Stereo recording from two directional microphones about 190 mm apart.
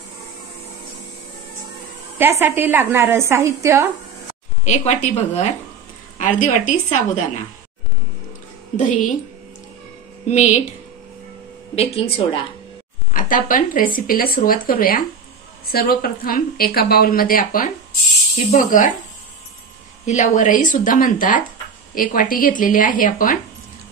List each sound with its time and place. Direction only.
2.1 s a woman's voice: 10° right (ahead or behind)
4.6 s speech: 40° left (ahead or behind)
8.7 s speech: 40° left (ahead or behind)
10.2 s speech: 35° left (ahead or behind)
11.7 s a woman's voice: 30° left (ahead or behind)
13.1 s a woman's voice: 45° left (ahead or behind)
20.1 s a woman's voice: 40° left (ahead or behind)